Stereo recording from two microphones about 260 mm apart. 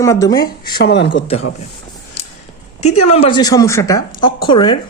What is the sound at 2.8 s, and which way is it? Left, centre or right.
Speech, left.